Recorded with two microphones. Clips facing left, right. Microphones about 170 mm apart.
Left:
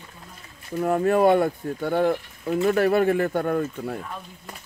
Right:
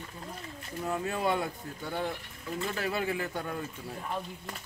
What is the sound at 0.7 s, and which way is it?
Speech, 60° left (ahead or behind).